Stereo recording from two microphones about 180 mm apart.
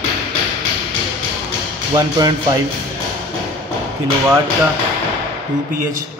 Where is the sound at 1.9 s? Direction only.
20° right (ahead or behind).